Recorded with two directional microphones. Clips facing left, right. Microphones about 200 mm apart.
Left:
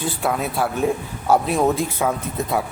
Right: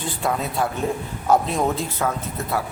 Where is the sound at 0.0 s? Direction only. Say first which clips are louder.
Left 2 dB; 10° left (ahead or behind).